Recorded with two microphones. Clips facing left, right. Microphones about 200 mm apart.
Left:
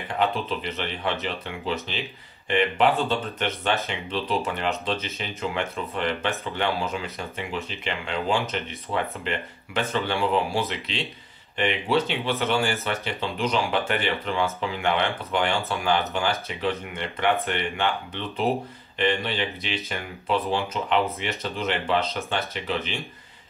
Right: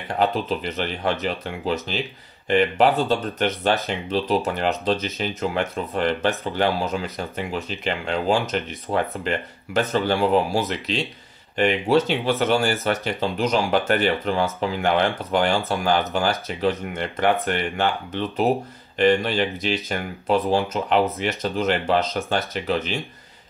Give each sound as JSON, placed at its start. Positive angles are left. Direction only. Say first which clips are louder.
{"t": 0.2, "sound": "speech", "louder": "right 3 dB", "side_deg": -40}